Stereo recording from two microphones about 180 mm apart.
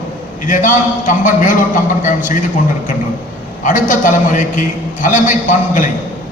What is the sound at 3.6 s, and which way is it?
A man's voice, 45° left (ahead or behind).